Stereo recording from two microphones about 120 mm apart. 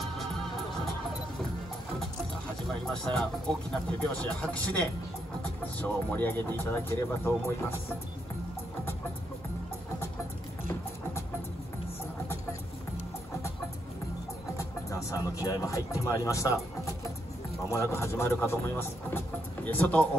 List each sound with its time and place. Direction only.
2.9 s speech: 5° left (ahead or behind)
14.6 s music: 25° left (ahead or behind)
17.6 s speech: 20° left (ahead or behind)